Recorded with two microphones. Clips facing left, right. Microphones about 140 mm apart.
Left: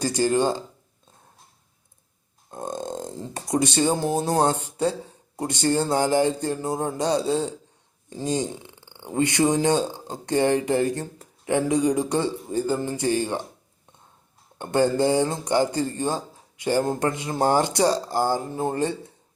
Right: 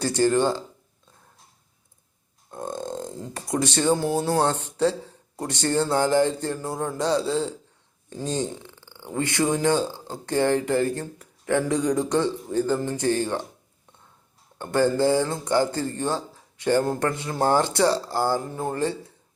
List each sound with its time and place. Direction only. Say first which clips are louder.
0.0 s speech: right 1 dB; 15° left (ahead or behind)
2.5 s a sound: even; 20° left (ahead or behind)
4.3 s speech: left 1 dB; 15° left (ahead or behind)
14.6 s speech: even; 20° left (ahead or behind)